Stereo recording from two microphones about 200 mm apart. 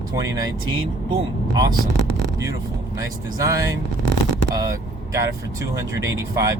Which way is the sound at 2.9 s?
15° right (ahead or behind).